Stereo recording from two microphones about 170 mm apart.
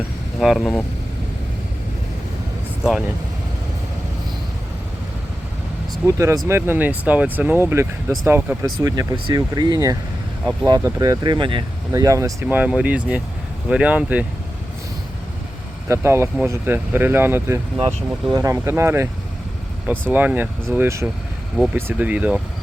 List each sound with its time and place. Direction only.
0.3 s speech: centre (ahead or behind)
6.1 s speech: 15° right (ahead or behind)
15.9 s speech: 15° right (ahead or behind)